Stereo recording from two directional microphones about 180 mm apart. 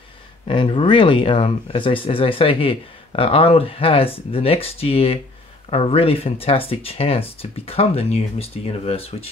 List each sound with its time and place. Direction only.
0.5 s speech: 30° left (ahead or behind)